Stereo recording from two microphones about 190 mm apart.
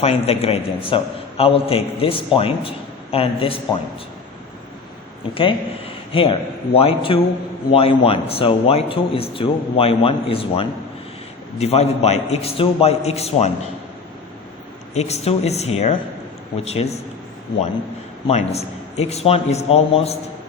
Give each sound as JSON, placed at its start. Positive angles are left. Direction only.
{"t": 0.0, "sound": "a man's voice", "side_deg": 30}
{"t": 5.3, "sound": "a man's voice", "side_deg": 30}
{"t": 14.9, "sound": "a man's voice", "side_deg": 35}
{"t": 18.3, "sound": "a man's voice", "side_deg": 35}